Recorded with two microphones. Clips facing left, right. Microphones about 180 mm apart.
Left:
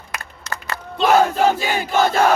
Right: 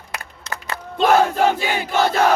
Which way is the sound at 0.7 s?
50° right (ahead or behind).